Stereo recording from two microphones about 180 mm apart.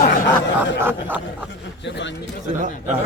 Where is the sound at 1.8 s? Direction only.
80° left.